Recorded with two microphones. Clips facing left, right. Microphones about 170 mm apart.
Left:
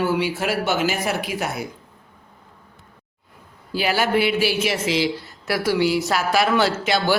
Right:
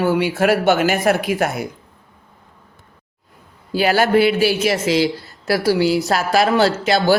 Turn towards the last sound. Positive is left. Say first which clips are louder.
# right 5 dB
turn(degrees=-40)  # may be behind; listen again after turning